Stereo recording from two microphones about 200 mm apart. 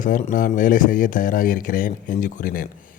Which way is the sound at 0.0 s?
40° left (ahead or behind).